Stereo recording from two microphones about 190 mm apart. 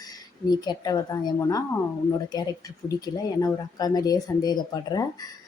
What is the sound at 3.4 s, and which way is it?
Speech, 20° left (ahead or behind).